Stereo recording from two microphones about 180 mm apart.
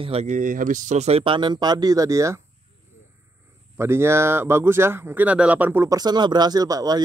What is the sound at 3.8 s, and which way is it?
Speech, 15° right (ahead or behind).